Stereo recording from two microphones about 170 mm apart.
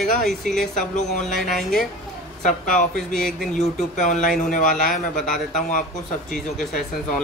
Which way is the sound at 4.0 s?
45° left (ahead or behind).